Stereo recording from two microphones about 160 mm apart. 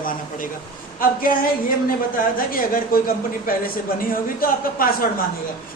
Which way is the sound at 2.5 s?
65° left (ahead or behind).